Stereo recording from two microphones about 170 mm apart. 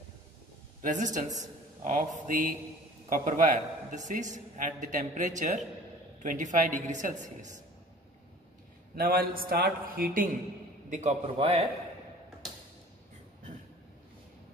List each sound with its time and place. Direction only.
0.8 s a man's voice: 45° right (ahead or behind)
8.9 s a man's voice: 60° right (ahead or behind)
10.9 s a man's voice: 45° right (ahead or behind)